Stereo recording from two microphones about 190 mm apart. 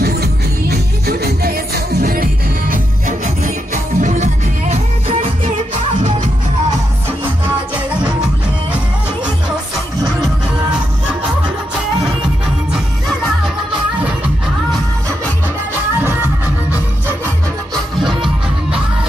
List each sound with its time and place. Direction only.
0.0 s music: 55° right (ahead or behind); by 5.1 s 35° right (ahead or behind)